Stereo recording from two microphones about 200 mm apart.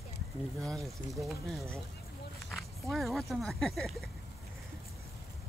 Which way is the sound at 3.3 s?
Centre (ahead or behind).